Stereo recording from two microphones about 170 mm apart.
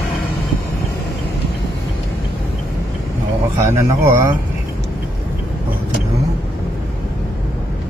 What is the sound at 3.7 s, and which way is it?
Speech, 15° right (ahead or behind).